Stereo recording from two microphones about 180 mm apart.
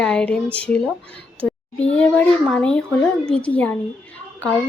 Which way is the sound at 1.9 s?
5° left (ahead or behind).